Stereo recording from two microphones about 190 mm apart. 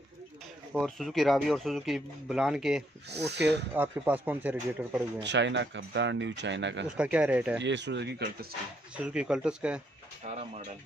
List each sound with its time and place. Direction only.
0.7 s speech: centre (ahead or behind)
3.1 s speech: 60° right (ahead or behind)
3.7 s speech: 10° right (ahead or behind)
5.2 s speech: 70° right (ahead or behind)
7.0 s speech: 5° right (ahead or behind)
7.6 s speech: 65° right (ahead or behind)
8.9 s speech: 5° right (ahead or behind)